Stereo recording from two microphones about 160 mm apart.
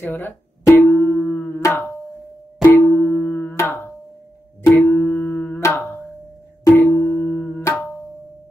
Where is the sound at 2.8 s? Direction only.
15° left (ahead or behind).